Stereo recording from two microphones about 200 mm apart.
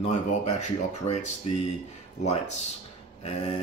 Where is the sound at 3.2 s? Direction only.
30° left (ahead or behind).